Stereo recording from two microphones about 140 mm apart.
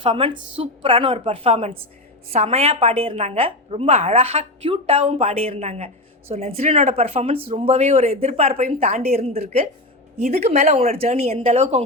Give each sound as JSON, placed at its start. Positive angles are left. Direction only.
{"t": 0.0, "sound": "a woman's voice", "side_deg": -40}